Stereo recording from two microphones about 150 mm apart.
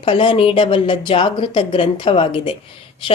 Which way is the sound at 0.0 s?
35° left (ahead or behind).